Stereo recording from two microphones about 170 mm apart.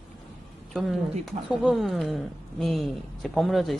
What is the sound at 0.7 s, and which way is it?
Speech, centre (ahead or behind).